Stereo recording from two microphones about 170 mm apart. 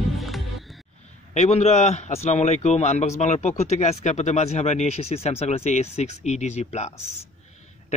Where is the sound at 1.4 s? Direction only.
40° left (ahead or behind).